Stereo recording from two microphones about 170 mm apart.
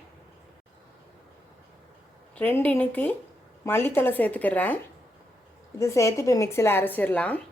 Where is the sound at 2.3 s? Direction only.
10° left (ahead or behind).